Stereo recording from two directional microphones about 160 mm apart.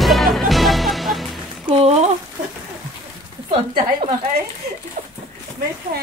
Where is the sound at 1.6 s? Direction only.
40° right (ahead or behind).